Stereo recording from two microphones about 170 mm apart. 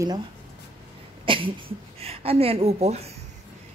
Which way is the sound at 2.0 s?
35° right (ahead or behind).